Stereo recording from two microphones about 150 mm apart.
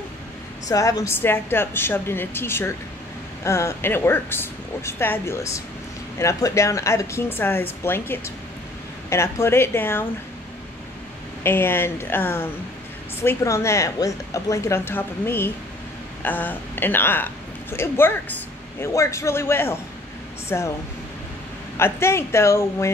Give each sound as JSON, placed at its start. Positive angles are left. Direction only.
{"t": 0.7, "sound": "a woman's voice", "side_deg": 20}
{"t": 11.4, "sound": "a woman's voice", "side_deg": 15}
{"t": 21.7, "sound": "a woman's voice", "side_deg": 15}